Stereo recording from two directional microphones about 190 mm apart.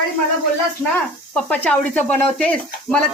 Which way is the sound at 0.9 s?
10° left (ahead or behind).